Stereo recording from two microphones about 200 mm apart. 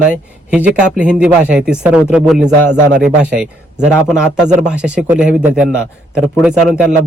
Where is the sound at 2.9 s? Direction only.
40° right (ahead or behind).